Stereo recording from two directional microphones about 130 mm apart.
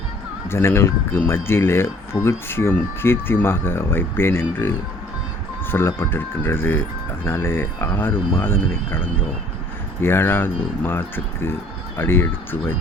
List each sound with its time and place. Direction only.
0.4 s speech: 20° left (ahead or behind)
5.7 s speech: 15° left (ahead or behind)
10.0 s speech: 20° left (ahead or behind)